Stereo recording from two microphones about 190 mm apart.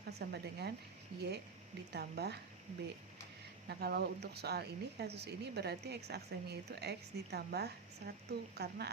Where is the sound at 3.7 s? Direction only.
60° right (ahead or behind).